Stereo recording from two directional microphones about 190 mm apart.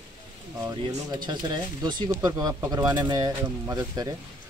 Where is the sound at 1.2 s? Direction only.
25° right (ahead or behind).